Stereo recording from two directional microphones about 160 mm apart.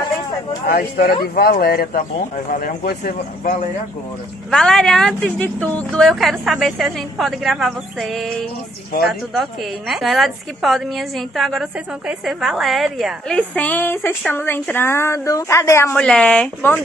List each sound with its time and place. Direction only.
0.7 s speech: 70° left (ahead or behind)
4.5 s a woman's voice: 5° left (ahead or behind)
16.0 s speech: 5° left (ahead or behind)